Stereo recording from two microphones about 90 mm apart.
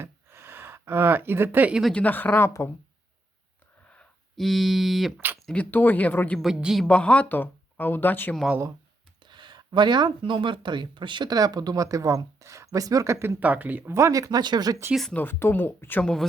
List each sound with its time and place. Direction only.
0.0 s a sound: 25° right (ahead or behind)
1.9 s speech: 15° left (ahead or behind)
4.4 s speech: centre (ahead or behind)
5.7 s speech: 20° left (ahead or behind)
6.4 s speech: 5° right (ahead or behind)
6.8 s speech: 15° left (ahead or behind)
9.2 s a sound: 60° right (ahead or behind)
10.2 s speech: 65° right (ahead or behind); by 13.4 s 30° right (ahead or behind)
13.4 s speech: 20° right (ahead or behind)
13.9 s speech: 35° right (ahead or behind)
15.1 s speech: 25° left (ahead or behind)